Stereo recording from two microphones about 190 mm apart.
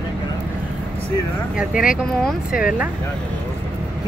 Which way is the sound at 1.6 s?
5° right (ahead or behind).